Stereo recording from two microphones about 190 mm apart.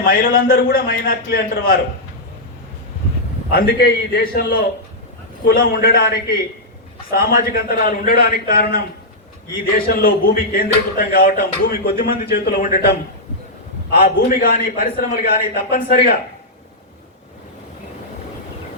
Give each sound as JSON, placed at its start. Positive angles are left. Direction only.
{"t": 0.0, "sound": "a man's voice", "side_deg": 50}
{"t": 3.5, "sound": "a man's voice", "side_deg": 55}